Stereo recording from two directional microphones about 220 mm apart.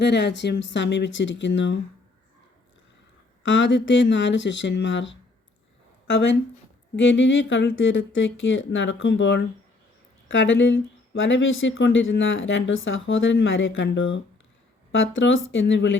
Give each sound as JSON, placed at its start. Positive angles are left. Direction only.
{"t": 0.0, "sound": "speech", "side_deg": 50}
{"t": 3.4, "sound": "speech", "side_deg": 55}